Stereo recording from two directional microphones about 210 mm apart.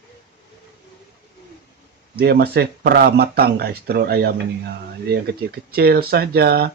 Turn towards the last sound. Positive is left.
turn(degrees=-45)  # may be behind; listen again after turning